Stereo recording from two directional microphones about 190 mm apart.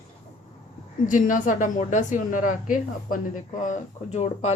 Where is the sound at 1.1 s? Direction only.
45° left (ahead or behind).